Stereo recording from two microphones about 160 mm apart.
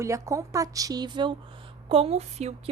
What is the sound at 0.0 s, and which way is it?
A woman's voice, 20° right (ahead or behind).